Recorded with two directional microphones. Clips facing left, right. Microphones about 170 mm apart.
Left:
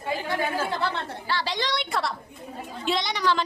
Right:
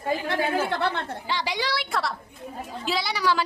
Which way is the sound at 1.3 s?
15° right (ahead or behind).